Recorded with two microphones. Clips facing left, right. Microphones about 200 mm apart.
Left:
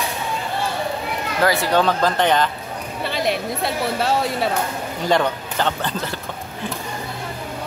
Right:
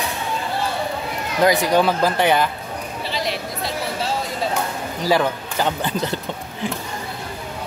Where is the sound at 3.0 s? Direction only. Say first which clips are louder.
Left 5 dB; 55° left (ahead or behind).